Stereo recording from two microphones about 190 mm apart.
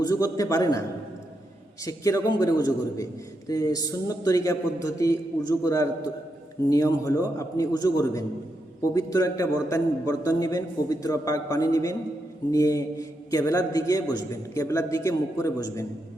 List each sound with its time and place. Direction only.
0.0 s a man's voice: 20° left (ahead or behind)
1.8 s a man's voice: 15° left (ahead or behind)